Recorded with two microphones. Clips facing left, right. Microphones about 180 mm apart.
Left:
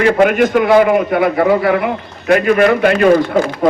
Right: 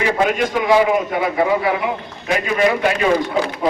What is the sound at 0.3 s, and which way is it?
A man's voice, 60° left (ahead or behind).